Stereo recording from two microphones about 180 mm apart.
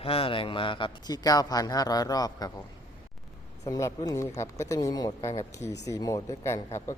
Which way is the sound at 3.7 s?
20° left (ahead or behind).